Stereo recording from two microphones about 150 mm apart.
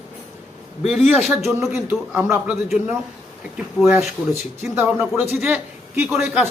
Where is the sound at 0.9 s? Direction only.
Centre (ahead or behind).